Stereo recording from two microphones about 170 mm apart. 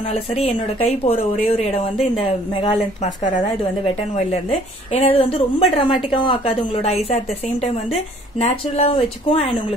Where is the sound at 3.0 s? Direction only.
40° left (ahead or behind).